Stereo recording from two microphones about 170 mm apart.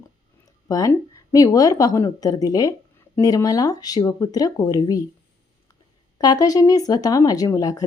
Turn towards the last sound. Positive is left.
turn(degrees=20)  # may be behind; listen again after turning